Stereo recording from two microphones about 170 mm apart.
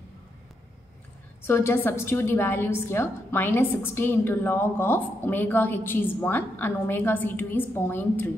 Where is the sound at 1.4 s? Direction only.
15° left (ahead or behind).